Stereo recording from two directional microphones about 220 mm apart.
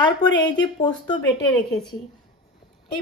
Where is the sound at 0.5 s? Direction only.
20° left (ahead or behind).